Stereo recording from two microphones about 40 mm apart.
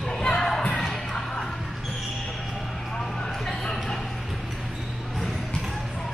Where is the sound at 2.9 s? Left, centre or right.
Centre.